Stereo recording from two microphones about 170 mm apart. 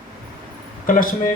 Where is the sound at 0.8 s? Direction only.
55° left (ahead or behind).